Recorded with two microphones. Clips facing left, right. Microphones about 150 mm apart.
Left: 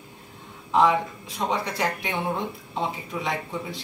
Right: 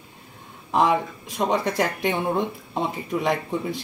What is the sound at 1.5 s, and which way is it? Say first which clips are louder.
Speech: right 3 dB; 50° right (ahead or behind).